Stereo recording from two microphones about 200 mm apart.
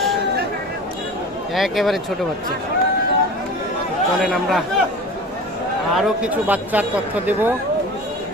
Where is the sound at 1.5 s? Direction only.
Centre (ahead or behind).